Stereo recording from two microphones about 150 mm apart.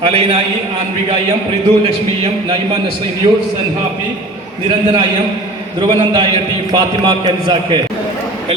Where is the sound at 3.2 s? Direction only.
35° right (ahead or behind).